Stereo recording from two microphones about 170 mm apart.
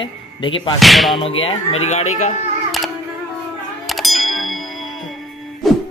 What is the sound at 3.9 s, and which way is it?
Bell, centre (ahead or behind).